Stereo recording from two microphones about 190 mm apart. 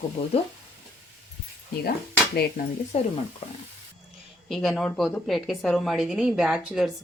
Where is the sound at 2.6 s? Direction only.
45° left (ahead or behind).